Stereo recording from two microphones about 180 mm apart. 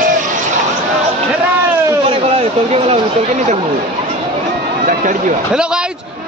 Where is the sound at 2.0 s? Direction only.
35° right (ahead or behind).